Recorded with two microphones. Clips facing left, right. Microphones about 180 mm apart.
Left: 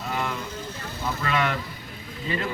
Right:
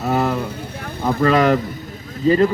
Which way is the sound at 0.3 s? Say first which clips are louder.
Right 8 dB; 60° right (ahead or behind).